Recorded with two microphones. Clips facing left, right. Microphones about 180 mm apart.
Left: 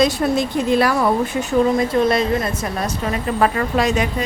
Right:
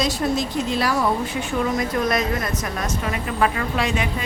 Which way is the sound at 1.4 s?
30° left (ahead or behind).